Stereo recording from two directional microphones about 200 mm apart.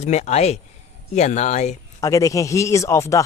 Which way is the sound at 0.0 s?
35° left (ahead or behind).